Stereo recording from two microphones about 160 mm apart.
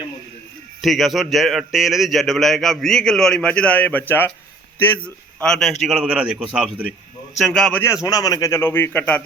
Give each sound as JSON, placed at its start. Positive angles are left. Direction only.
{"t": 0.8, "sound": "a man's voice", "side_deg": 0}
{"t": 8.0, "sound": "a man's voice", "side_deg": 25}